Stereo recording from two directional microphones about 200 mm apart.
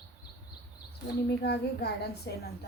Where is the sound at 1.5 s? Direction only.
55° left (ahead or behind).